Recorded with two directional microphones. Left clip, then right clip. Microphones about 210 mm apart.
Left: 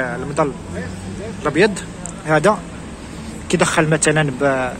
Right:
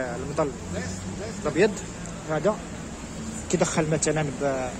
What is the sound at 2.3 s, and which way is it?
Speech, 15° left (ahead or behind).